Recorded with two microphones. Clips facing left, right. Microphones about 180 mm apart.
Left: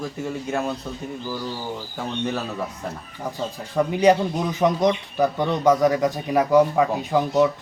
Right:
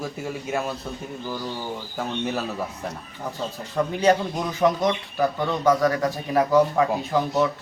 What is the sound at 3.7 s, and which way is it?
Speech, 15° left (ahead or behind).